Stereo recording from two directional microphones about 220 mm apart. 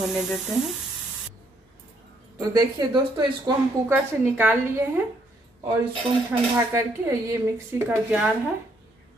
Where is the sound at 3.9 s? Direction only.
10° right (ahead or behind).